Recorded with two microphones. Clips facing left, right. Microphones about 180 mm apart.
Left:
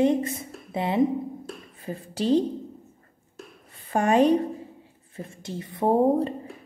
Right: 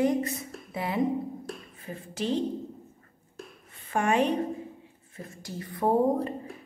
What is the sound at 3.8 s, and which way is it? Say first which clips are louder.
A woman's voice: left 5 dB; 35° left (ahead or behind).